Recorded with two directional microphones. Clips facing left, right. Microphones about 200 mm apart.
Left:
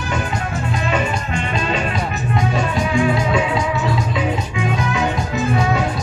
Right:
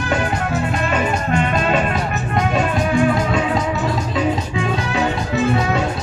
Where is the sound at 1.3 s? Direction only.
55° right (ahead or behind).